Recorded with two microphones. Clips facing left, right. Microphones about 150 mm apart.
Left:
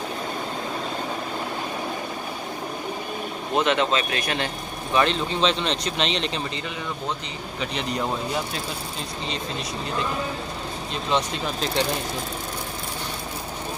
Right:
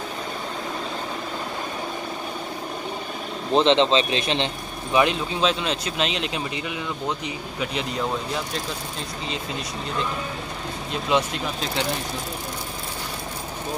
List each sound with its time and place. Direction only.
3.5 s speech: 25° right (ahead or behind)
4.9 s speech: 10° right (ahead or behind)
7.6 s speech: centre (ahead or behind)
10.9 s speech: 5° right (ahead or behind)